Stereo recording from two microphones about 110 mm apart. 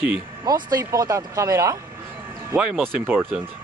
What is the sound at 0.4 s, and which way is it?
Speech, 35° right (ahead or behind).